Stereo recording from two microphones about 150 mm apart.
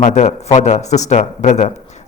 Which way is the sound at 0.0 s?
50° left (ahead or behind).